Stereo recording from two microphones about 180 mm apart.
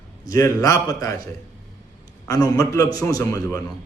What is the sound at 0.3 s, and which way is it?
Speech, 20° left (ahead or behind).